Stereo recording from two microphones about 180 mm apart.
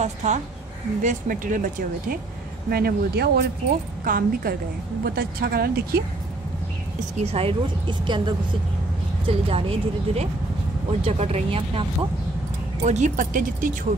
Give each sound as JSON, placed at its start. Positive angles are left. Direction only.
{"t": 0.0, "sound": "speech", "side_deg": -40}
{"t": 2.7, "sound": "a woman's voice", "side_deg": -60}
{"t": 7.2, "sound": "speech", "side_deg": -35}
{"t": 9.5, "sound": "speech", "side_deg": -30}